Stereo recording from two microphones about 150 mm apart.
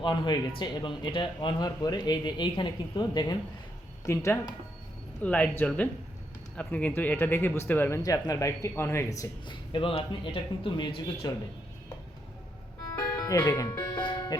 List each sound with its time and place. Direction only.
0.0 s speech: 30° left (ahead or behind)
5.2 s speech: 10° left (ahead or behind)
9.7 s speech: 35° left (ahead or behind)
12.9 s music: 20° left (ahead or behind)